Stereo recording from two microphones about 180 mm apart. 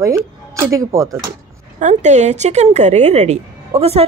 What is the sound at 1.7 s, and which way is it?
Speech, 40° right (ahead or behind).